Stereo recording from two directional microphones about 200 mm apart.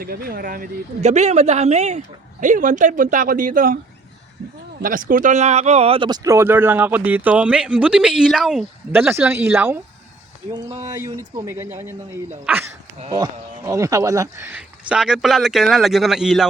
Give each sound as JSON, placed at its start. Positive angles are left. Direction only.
{"t": 0.0, "sound": "speech", "side_deg": -50}
{"t": 4.8, "sound": "speech", "side_deg": -45}
{"t": 13.1, "sound": "speech", "side_deg": -20}